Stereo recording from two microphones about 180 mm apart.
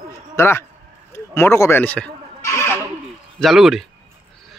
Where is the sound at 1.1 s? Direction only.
15° left (ahead or behind).